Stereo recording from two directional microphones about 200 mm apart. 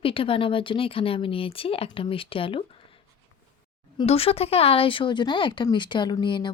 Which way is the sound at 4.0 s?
30° left (ahead or behind).